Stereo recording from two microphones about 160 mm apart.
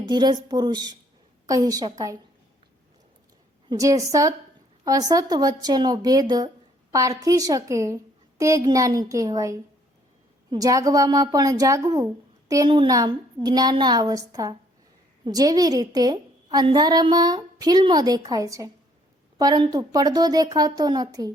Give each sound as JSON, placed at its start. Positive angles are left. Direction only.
{"t": 0.0, "sound": "a woman's voice", "side_deg": -30}
{"t": 3.7, "sound": "a woman's voice", "side_deg": -20}